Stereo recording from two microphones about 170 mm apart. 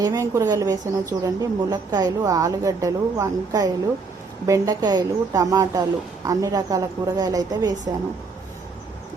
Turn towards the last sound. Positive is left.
turn(degrees=-25)  # may be behind; listen again after turning